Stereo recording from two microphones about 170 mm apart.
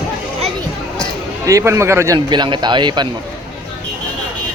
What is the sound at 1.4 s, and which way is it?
A man's voice, 20° right (ahead or behind).